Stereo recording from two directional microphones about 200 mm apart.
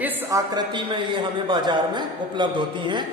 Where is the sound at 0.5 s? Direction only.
25° right (ahead or behind).